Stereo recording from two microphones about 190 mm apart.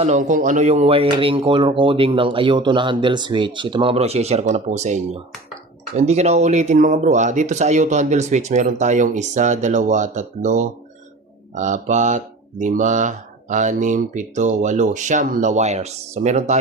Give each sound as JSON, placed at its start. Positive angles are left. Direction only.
{"t": 0.0, "sound": "speech", "side_deg": -40}